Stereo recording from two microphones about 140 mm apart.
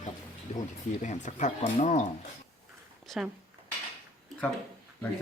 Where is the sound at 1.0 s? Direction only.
60° left (ahead or behind).